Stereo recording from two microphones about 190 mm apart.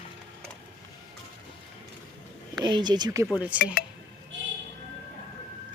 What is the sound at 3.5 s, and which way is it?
Speech, 5° right (ahead or behind).